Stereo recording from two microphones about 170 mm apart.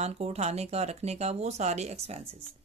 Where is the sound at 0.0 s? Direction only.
40° right (ahead or behind).